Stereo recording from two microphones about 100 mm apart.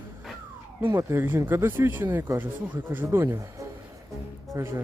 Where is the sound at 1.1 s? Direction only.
25° right (ahead or behind).